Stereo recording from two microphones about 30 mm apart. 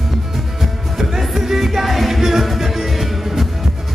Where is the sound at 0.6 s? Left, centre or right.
Centre.